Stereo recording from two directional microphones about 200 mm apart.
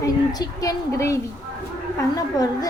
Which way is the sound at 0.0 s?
20° left (ahead or behind).